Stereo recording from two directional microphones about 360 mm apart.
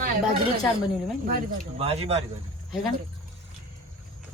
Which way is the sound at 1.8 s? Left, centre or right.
Centre.